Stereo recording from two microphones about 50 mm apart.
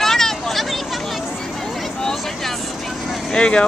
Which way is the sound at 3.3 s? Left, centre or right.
Centre.